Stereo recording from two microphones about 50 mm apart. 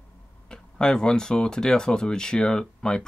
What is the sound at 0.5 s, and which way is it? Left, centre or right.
Speech, centre.